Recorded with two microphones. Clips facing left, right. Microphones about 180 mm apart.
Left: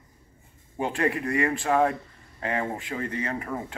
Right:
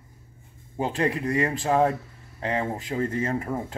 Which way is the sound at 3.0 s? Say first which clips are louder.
Right 4 dB; 45° right (ahead or behind).